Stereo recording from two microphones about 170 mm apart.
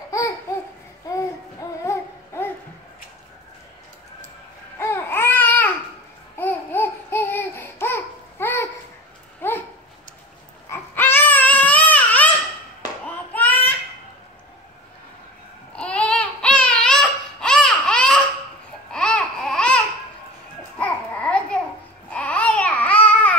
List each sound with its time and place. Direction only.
1.1 s babbling: 15° left (ahead or behind)
4.7 s babbling: 15° left (ahead or behind)
9.4 s dog: 15° left (ahead or behind)
10.7 s baby cry: 10° left (ahead or behind)
13.0 s a sound: 10° left (ahead or behind)
15.7 s baby cry: 5° left (ahead or behind)
18.9 s babbling: 5° left (ahead or behind)